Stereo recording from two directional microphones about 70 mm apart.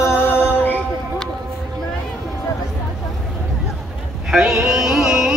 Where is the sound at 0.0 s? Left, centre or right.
Left.